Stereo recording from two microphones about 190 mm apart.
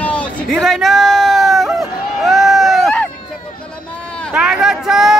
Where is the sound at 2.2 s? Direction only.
Centre (ahead or behind).